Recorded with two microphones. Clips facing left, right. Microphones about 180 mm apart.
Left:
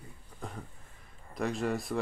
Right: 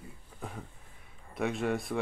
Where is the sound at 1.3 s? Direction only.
Centre (ahead or behind).